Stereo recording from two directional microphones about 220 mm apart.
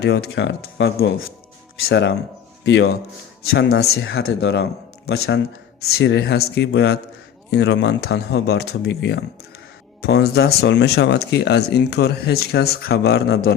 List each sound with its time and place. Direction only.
0.0 s speech: 50° left (ahead or behind)